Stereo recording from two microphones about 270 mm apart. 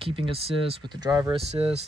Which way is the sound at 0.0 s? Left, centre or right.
Centre.